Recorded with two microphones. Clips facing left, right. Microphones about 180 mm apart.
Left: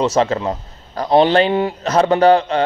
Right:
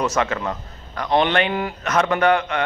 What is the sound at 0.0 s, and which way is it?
A man's voice, 30° left (ahead or behind).